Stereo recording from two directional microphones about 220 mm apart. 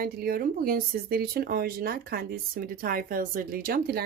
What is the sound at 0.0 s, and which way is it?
Speech, 45° right (ahead or behind).